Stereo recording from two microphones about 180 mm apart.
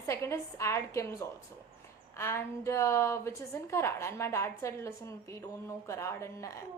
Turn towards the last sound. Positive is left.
turn(degrees=15)  # may be behind; listen again after turning